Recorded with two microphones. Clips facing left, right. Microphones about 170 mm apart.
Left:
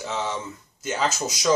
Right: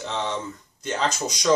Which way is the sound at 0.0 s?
5° left (ahead or behind).